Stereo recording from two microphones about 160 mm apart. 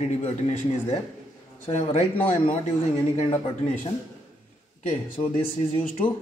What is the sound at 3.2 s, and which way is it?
Speech, 40° left (ahead or behind).